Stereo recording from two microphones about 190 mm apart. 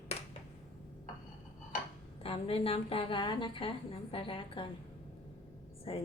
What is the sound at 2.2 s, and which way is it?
A woman's voice, 30° left (ahead or behind).